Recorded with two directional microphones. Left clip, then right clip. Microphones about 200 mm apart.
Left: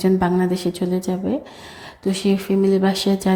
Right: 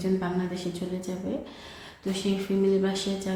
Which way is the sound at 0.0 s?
40° left (ahead or behind).